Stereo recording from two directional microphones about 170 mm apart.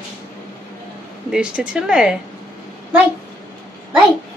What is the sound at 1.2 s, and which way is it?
Speech, 5° right (ahead or behind).